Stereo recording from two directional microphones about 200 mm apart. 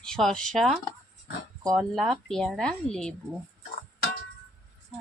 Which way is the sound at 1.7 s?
Centre (ahead or behind).